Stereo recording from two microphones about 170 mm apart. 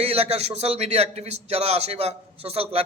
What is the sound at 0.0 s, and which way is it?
A man's voice, 40° right (ahead or behind).